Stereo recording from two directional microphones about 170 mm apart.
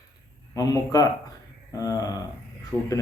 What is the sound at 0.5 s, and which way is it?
A man's voice, 20° left (ahead or behind).